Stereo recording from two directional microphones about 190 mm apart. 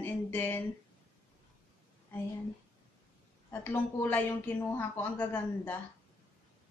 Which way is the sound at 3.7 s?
10° left (ahead or behind).